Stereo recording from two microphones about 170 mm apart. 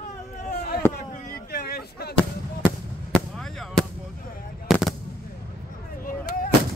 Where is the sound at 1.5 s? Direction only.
65° left (ahead or behind).